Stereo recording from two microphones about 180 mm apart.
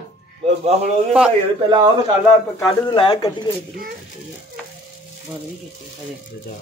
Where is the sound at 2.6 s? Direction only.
25° left (ahead or behind).